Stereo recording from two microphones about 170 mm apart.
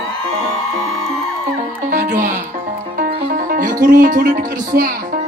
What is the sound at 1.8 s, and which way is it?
Music, 50° right (ahead or behind).